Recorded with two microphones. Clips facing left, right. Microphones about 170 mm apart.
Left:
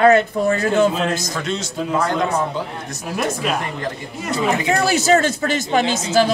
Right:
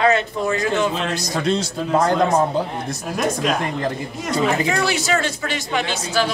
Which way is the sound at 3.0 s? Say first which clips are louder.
Even; 5° left (ahead or behind).